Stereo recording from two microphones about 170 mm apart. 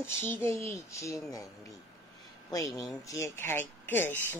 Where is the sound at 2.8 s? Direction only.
20° left (ahead or behind).